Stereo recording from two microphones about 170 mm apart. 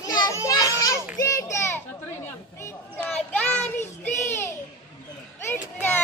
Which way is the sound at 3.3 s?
5° left (ahead or behind).